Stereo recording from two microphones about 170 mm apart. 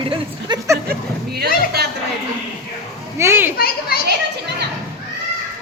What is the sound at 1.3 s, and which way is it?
Speech, 70° right (ahead or behind).